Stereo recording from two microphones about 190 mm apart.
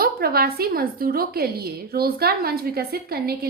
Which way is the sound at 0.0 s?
50° right (ahead or behind).